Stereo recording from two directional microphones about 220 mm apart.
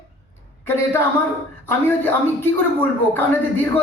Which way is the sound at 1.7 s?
10° left (ahead or behind).